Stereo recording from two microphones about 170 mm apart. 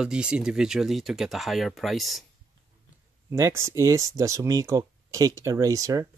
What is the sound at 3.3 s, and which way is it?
Speech, 15° right (ahead or behind).